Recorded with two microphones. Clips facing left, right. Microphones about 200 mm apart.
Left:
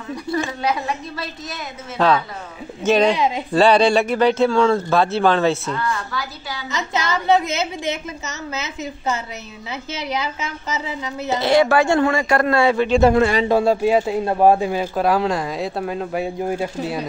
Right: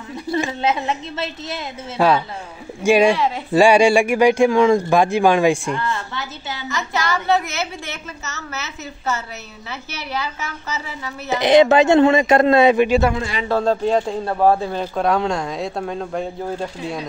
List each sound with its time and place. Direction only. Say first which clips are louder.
0.1 s speech: right 1 dB; 25° right (ahead or behind)
2.0 s speech: right 1 dB; 10° right (ahead or behind)
3.2 s a man's voice: left 1 dB; 15° left (ahead or behind)
3.5 s speech: right 2 dB; 10° right (ahead or behind)
5.8 s speech: left 1 dB; 25° right (ahead or behind)
6.7 s a woman's voice: even; 20° left (ahead or behind)
11.3 s speech: right 3 dB; 20° right (ahead or behind)
13.1 s a man's voice: left 9 dB; 50° left (ahead or behind)
13.5 s a man's voice: left 2 dB; 10° left (ahead or behind)